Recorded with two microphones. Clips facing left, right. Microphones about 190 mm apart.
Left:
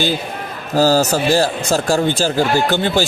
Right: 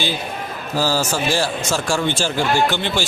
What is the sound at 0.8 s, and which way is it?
Speech, 45° left (ahead or behind).